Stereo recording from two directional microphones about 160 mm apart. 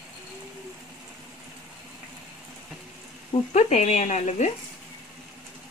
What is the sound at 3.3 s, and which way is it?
Speech, 45° left (ahead or behind).